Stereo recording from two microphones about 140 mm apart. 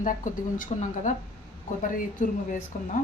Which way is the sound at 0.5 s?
65° left (ahead or behind).